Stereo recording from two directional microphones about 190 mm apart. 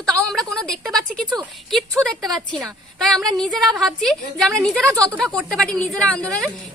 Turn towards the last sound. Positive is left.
turn(degrees=5)  # may be behind; listen again after turning